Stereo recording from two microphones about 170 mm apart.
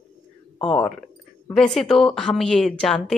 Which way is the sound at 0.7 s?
5° left (ahead or behind).